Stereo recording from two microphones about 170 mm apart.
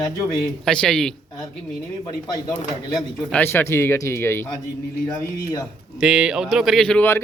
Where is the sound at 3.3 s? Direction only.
15° left (ahead or behind).